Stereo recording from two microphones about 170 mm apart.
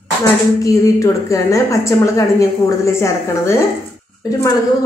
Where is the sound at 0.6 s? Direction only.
20° left (ahead or behind).